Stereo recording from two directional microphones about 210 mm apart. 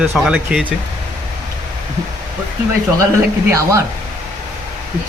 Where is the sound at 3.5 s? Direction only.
15° right (ahead or behind).